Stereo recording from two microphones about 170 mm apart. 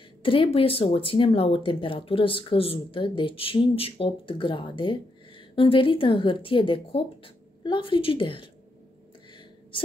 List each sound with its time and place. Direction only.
0.2 s a woman's voice: 30° left (ahead or behind)